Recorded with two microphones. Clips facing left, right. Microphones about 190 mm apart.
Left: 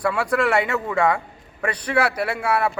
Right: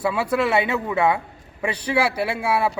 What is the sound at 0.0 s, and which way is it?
A man's voice, 5° right (ahead or behind).